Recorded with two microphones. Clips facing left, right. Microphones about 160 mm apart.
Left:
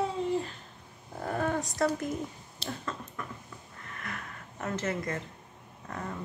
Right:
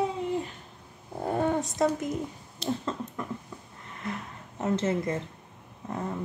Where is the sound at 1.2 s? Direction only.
25° right (ahead or behind).